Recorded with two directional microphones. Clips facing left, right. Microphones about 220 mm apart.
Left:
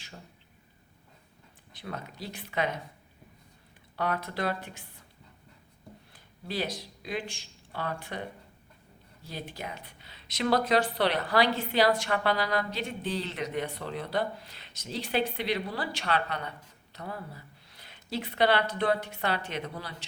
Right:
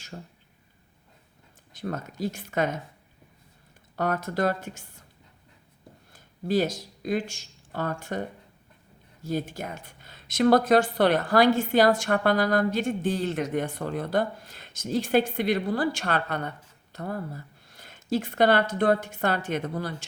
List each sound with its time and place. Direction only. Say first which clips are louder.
0.1 s speech: right 8 dB; 45° right (ahead or behind)
1.7 s speech: right 7 dB; 45° right (ahead or behind)
3.9 s speech: right 5 dB; 45° right (ahead or behind)
6.1 s speech: right 9 dB; 45° right (ahead or behind)
9.2 s speech: right 9 dB; 45° right (ahead or behind)